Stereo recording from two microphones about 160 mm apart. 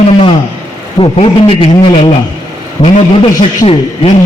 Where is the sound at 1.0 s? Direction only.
35° left (ahead or behind).